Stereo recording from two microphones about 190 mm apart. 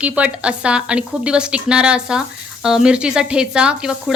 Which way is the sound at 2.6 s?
5° right (ahead or behind).